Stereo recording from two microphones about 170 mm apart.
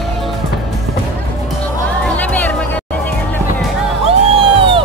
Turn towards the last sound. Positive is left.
turn(degrees=-30)  # may be behind; listen again after turning